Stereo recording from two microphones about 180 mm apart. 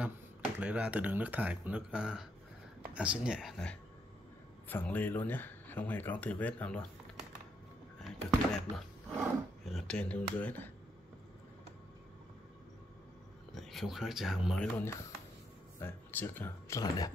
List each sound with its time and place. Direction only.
0.6 s speech: 5° right (ahead or behind)
8.0 s speech: 5° left (ahead or behind)
13.6 s speech: centre (ahead or behind); by 17.1 s 15° left (ahead or behind)